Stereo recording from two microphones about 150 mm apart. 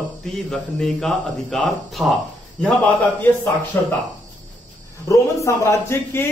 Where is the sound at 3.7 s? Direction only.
15° left (ahead or behind).